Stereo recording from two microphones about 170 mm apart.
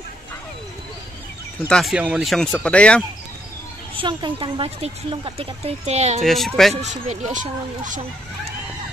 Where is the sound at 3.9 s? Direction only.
30° right (ahead or behind).